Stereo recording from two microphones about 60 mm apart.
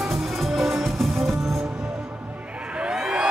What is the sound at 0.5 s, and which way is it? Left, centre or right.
Music, centre.